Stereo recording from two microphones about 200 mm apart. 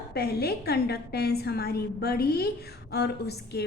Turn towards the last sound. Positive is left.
turn(degrees=55)  # may be behind; listen again after turning